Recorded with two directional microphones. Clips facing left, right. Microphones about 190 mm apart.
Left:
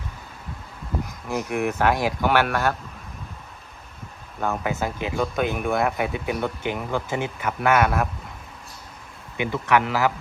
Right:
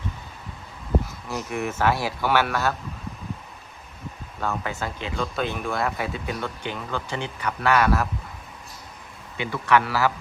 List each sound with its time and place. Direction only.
1.0 s a sound: 15° left (ahead or behind)
1.5 s speech: 15° left (ahead or behind)
4.4 s speech: 15° left (ahead or behind)
9.4 s speech: 15° left (ahead or behind)